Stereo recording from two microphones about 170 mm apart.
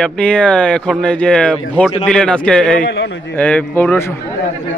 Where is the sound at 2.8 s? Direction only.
90° left.